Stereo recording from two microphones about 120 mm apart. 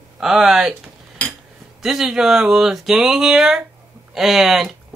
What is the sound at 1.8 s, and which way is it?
Speech, 5° right (ahead or behind).